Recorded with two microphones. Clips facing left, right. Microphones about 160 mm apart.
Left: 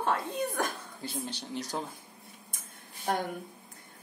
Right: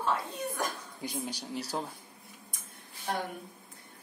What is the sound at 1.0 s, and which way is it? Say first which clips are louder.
Speech: right 1 dB; 10° right (ahead or behind).